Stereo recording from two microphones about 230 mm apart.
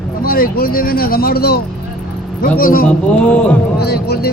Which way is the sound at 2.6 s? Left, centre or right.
Left.